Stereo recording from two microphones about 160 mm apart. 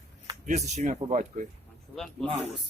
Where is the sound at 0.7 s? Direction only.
50° right (ahead or behind).